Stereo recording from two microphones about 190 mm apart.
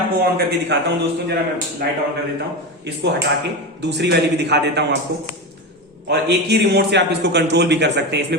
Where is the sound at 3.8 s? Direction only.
65° right (ahead or behind).